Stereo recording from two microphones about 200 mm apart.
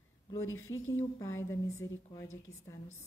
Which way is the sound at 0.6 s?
15° left (ahead or behind).